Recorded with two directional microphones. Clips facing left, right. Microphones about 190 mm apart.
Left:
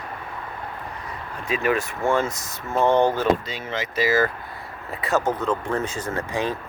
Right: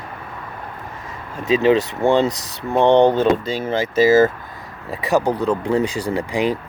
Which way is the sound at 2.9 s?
20° right (ahead or behind).